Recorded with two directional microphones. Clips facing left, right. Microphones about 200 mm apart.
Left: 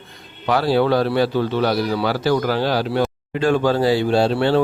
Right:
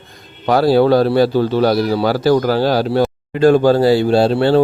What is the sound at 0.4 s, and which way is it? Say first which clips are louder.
A man's voice: right 5 dB; 40° right (ahead or behind).